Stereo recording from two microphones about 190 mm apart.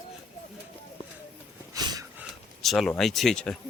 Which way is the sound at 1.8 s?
20° right (ahead or behind).